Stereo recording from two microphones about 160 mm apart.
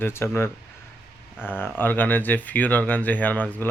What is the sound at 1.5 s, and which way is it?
Speech, 15° left (ahead or behind).